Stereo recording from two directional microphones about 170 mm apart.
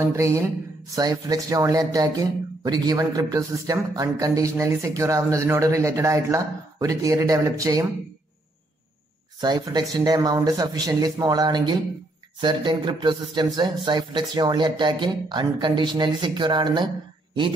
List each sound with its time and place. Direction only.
0.1 s speech: 15° right (ahead or behind)
9.4 s speech: 25° right (ahead or behind)